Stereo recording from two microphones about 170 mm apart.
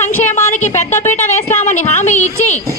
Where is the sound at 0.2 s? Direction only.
45° left (ahead or behind).